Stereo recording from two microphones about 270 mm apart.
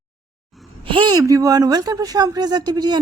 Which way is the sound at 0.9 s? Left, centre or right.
Centre.